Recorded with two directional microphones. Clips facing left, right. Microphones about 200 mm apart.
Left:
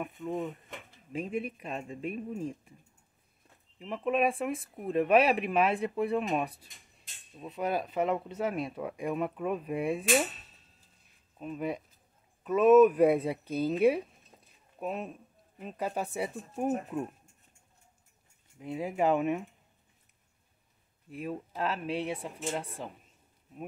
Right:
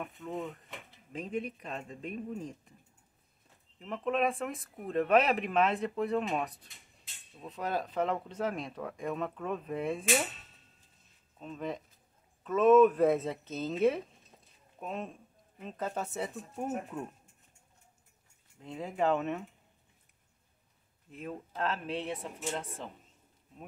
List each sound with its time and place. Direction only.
0.0 s speech: 5° left (ahead or behind)
3.8 s speech: 10° left (ahead or behind)
11.3 s speech: 10° left (ahead or behind)
18.6 s speech: 10° left (ahead or behind)
21.1 s speech: 10° left (ahead or behind)